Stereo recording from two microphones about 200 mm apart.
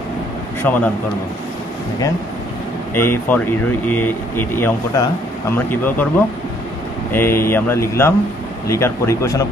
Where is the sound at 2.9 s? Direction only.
10° left (ahead or behind).